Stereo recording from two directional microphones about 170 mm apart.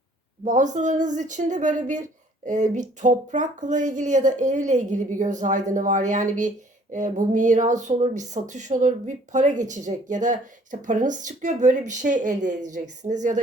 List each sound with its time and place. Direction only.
0.4 s speech: 45° right (ahead or behind)